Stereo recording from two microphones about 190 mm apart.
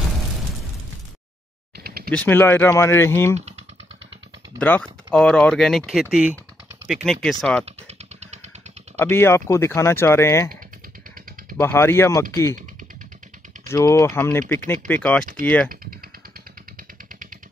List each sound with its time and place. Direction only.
1.8 s a sound: 55° right (ahead or behind)
2.0 s speech: 10° left (ahead or behind)
4.6 s speech: 10° left (ahead or behind)
9.0 s speech: 10° left (ahead or behind)
11.5 s speech: 15° left (ahead or behind)
13.7 s speech: 15° left (ahead or behind)